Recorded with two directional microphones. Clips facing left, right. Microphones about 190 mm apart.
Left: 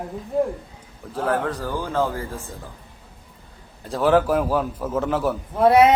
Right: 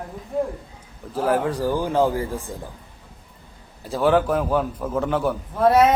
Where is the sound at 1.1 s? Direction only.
5° right (ahead or behind).